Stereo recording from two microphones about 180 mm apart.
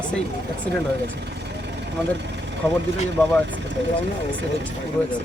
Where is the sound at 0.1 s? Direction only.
5° left (ahead or behind).